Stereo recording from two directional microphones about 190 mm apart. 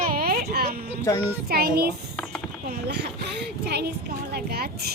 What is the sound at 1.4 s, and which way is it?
A child's voice, 50° right (ahead or behind).